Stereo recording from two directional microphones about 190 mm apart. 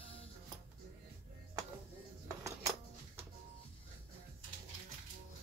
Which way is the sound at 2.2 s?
15° right (ahead or behind).